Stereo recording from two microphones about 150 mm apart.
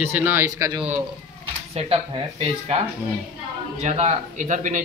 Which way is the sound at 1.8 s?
40° right (ahead or behind).